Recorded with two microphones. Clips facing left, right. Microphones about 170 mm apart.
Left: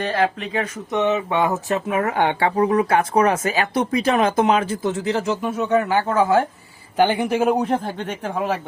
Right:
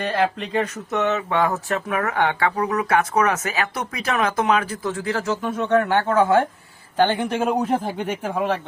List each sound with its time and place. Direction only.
0.1 s a man's voice: 5° left (ahead or behind)
0.9 s a man's voice: 15° left (ahead or behind); by 8.5 s centre (ahead or behind)